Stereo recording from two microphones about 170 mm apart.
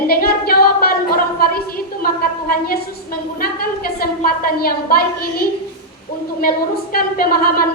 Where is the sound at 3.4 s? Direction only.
60° left (ahead or behind).